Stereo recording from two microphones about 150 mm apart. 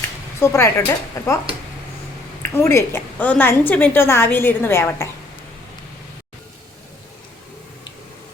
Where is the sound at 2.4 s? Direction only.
15° left (ahead or behind).